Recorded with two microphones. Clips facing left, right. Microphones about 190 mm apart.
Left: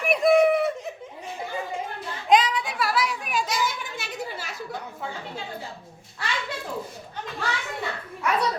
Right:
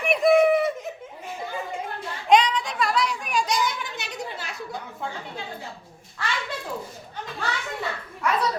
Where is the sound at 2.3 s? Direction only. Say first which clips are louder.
Right 1 dB; 5° left (ahead or behind).